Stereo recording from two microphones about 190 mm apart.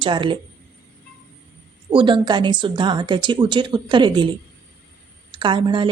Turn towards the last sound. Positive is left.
turn(degrees=-25)  # may be behind; listen again after turning